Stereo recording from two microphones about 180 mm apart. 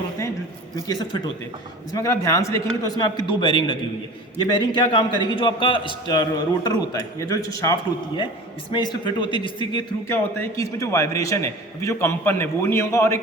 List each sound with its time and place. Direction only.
0.8 s a man's voice: 20° left (ahead or behind)